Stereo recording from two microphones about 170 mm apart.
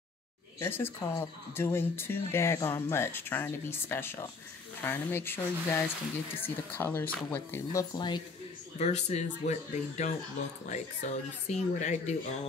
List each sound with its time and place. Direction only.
0.6 s speech: 15° left (ahead or behind)
7.9 s speech: 25° left (ahead or behind)
8.7 s speech: 40° left (ahead or behind)